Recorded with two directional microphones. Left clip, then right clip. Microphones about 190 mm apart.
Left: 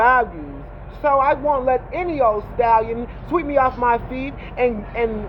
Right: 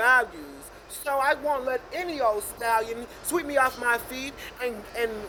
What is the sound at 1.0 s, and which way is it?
Speech, 20° right (ahead or behind).